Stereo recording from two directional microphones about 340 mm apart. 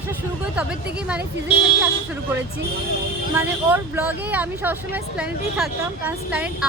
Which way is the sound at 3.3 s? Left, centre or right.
Centre.